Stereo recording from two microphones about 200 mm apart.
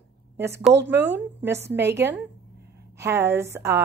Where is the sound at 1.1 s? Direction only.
10° right (ahead or behind).